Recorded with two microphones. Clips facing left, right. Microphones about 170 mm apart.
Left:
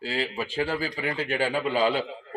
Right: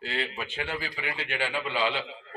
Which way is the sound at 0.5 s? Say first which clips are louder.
Left 9 dB; 35° left (ahead or behind).